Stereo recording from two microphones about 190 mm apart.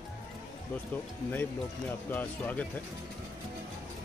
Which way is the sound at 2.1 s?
10° left (ahead or behind).